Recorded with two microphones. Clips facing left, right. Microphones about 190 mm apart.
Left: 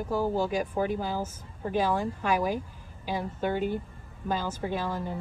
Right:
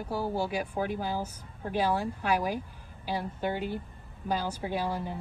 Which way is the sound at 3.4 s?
50° left (ahead or behind).